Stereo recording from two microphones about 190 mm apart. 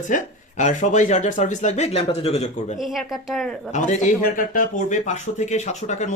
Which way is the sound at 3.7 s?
40° left (ahead or behind).